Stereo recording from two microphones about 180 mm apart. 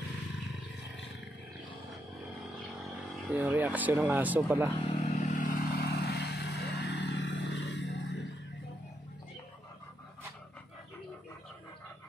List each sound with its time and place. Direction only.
3.3 s speech: 10° right (ahead or behind)
5.0 s vehicle: 45° left (ahead or behind); by 8.2 s 80° left